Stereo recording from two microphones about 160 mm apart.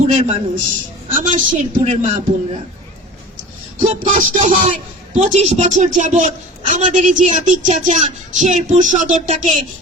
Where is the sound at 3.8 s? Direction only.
50° right (ahead or behind).